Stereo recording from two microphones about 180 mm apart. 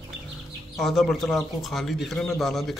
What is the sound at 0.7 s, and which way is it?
A man's voice, centre (ahead or behind).